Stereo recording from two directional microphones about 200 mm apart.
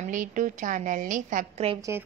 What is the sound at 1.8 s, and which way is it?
Speech, 15° right (ahead or behind).